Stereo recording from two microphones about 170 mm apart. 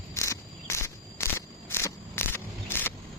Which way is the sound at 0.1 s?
15° left (ahead or behind).